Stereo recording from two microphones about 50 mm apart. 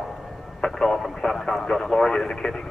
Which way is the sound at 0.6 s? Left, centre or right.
Centre.